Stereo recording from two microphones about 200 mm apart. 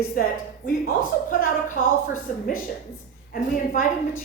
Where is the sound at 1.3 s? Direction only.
40° left (ahead or behind).